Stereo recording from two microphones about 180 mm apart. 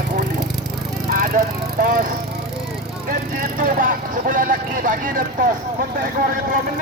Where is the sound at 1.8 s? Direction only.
50° right (ahead or behind).